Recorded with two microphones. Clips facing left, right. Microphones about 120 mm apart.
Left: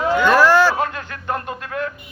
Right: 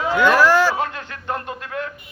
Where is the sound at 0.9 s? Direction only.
25° right (ahead or behind).